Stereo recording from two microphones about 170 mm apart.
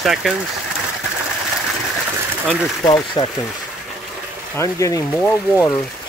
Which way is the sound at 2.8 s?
25° left (ahead or behind).